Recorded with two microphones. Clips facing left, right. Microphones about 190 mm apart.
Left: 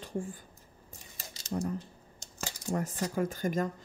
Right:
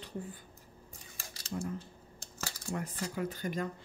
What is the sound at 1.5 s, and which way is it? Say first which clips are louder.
Speech: left 4 dB; 45° left (ahead or behind).